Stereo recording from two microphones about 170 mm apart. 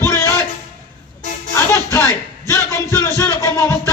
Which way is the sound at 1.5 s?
15° left (ahead or behind).